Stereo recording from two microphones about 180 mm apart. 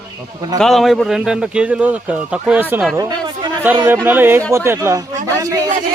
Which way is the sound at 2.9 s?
20° right (ahead or behind).